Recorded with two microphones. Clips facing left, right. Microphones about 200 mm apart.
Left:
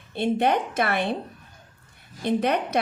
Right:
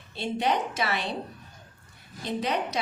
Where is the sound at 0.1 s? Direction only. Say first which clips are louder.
Left 5 dB; 55° left (ahead or behind).